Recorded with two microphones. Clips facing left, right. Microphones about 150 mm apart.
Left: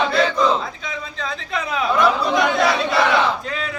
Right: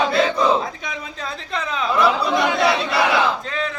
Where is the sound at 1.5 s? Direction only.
10° left (ahead or behind).